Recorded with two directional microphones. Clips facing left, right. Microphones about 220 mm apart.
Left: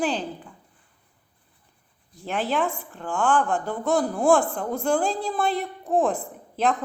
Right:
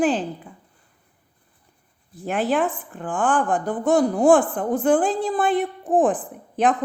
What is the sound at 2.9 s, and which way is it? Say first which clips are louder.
Speech: right 4 dB; 45° right (ahead or behind).